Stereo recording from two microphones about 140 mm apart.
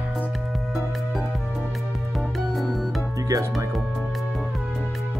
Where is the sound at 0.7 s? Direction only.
Centre (ahead or behind).